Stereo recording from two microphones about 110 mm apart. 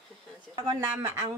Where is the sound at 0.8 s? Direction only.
25° right (ahead or behind).